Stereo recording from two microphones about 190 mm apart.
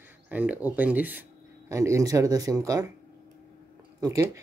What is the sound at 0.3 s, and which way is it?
Speech, 10° right (ahead or behind).